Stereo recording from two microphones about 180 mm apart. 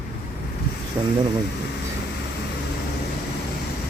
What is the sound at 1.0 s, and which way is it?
Speech, 15° right (ahead or behind).